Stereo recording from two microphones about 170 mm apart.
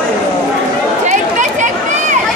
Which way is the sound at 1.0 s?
45° right (ahead or behind).